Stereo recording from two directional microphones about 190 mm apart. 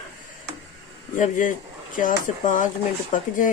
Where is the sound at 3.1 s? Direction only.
40° left (ahead or behind).